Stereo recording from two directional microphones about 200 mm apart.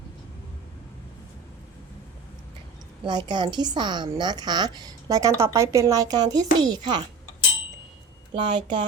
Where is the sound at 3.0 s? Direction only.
20° right (ahead or behind).